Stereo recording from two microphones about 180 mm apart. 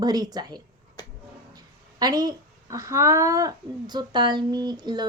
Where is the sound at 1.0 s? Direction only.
20° left (ahead or behind).